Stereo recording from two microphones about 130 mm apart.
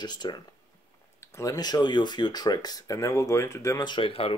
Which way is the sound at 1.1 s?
25° left (ahead or behind).